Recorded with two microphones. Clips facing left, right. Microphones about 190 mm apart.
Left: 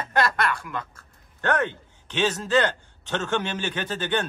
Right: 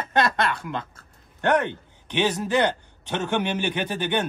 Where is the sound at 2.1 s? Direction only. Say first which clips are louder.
Even; 10° right (ahead or behind).